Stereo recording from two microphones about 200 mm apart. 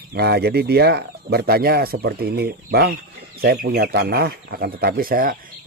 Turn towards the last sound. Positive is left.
turn(degrees=-45)  # may be behind; listen again after turning